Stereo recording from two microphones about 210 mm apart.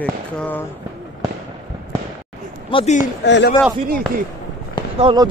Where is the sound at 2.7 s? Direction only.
35° left (ahead or behind).